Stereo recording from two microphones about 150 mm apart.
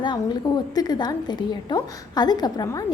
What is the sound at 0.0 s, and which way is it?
A woman's voice, 30° left (ahead or behind).